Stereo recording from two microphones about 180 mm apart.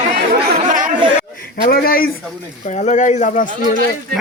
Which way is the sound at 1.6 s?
60° left (ahead or behind).